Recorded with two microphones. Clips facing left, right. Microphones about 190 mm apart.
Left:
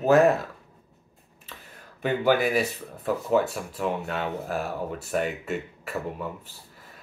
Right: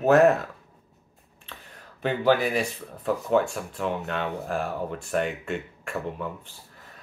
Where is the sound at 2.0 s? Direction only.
10° left (ahead or behind).